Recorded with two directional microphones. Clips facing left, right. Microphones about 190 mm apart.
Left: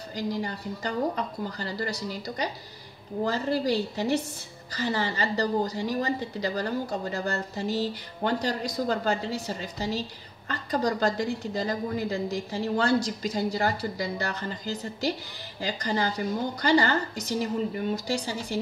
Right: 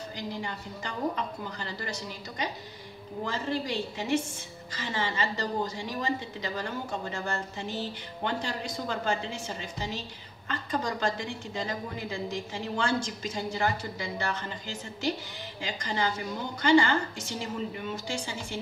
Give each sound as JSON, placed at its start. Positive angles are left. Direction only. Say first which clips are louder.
{"t": 0.1, "sound": "a woman's voice", "louder": "left 8 dB", "side_deg": 35}